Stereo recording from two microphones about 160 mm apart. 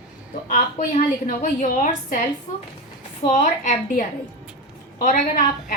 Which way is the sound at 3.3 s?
50° left (ahead or behind).